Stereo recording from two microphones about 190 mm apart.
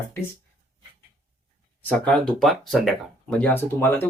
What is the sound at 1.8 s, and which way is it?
Speech, 5° left (ahead or behind).